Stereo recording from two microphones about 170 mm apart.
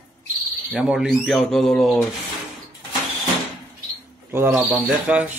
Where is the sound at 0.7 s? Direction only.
5° right (ahead or behind).